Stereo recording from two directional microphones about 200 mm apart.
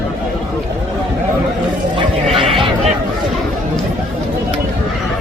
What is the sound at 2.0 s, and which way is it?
Neigh, 25° right (ahead or behind).